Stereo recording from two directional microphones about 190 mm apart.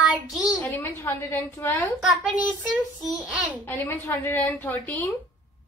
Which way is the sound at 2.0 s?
Centre (ahead or behind).